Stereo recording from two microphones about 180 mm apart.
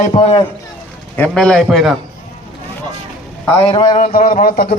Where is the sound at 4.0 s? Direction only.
45° left (ahead or behind).